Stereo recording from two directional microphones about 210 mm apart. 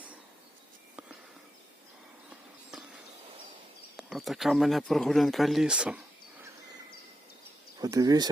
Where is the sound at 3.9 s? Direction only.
Centre (ahead or behind).